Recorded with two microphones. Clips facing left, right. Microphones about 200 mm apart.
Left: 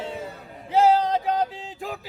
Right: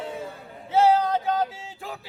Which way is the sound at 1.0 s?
15° left (ahead or behind).